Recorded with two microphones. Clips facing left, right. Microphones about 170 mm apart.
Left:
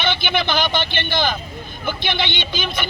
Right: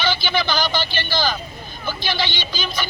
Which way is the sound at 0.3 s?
25° left (ahead or behind).